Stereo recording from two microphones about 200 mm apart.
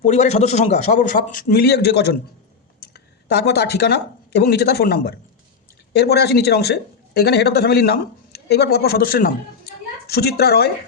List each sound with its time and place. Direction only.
0.0 s a man's voice: 35° left (ahead or behind); by 10.7 s 50° left (ahead or behind)